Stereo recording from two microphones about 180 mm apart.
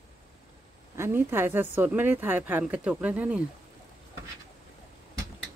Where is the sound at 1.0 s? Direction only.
15° right (ahead or behind).